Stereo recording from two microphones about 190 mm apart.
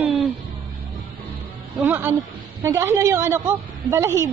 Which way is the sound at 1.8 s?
10° right (ahead or behind).